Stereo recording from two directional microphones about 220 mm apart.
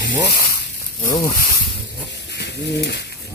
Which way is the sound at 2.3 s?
50° left (ahead or behind).